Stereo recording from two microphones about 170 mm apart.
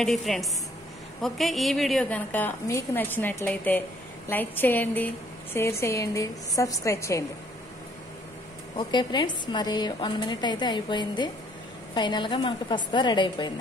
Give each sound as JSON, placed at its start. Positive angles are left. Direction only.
{"t": 0.0, "sound": "a woman's voice", "side_deg": 0}
{"t": 8.7, "sound": "a woman's voice", "side_deg": 25}